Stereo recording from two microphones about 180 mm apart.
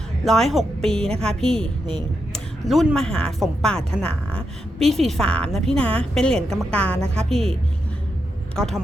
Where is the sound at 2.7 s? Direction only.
Centre (ahead or behind).